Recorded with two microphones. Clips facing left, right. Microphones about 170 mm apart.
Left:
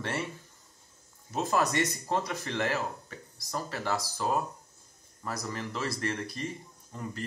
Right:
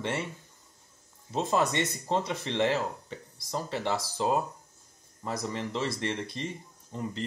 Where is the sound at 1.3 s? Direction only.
25° right (ahead or behind).